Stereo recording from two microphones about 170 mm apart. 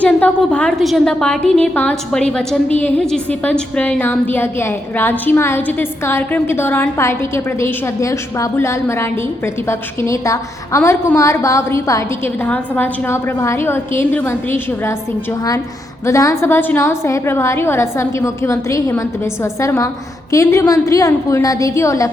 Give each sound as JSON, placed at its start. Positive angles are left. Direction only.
{"t": 0.0, "sound": "a woman's voice", "side_deg": 10}
{"t": 16.0, "sound": "a woman's voice", "side_deg": 20}